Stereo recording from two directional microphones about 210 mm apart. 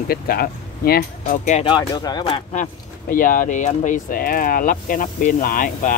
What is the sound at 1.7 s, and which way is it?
Speech, 20° left (ahead or behind).